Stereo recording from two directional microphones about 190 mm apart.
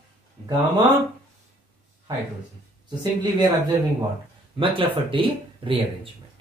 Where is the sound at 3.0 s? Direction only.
20° right (ahead or behind).